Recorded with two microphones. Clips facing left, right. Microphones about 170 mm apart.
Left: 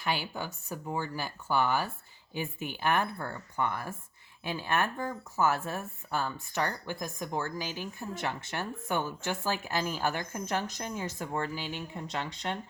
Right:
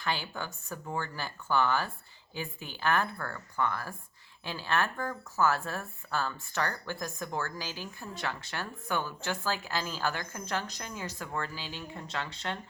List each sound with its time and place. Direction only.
0.0 s speech: 15° left (ahead or behind)